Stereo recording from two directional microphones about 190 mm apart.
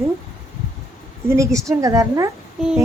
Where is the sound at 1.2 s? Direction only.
15° right (ahead or behind).